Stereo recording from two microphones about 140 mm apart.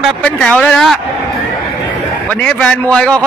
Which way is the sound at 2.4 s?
5° left (ahead or behind).